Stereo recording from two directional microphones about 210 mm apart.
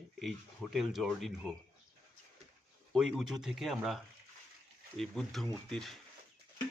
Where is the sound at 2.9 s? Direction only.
Centre (ahead or behind).